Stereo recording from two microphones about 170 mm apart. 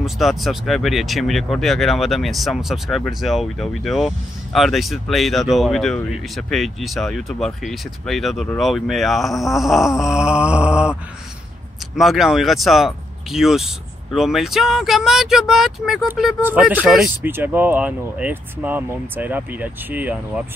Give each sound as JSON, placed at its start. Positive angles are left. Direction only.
{"t": 0.0, "sound": "speech", "side_deg": 0}